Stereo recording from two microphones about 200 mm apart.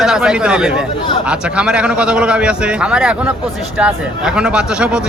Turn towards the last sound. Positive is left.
turn(degrees=-5)  # may be behind; listen again after turning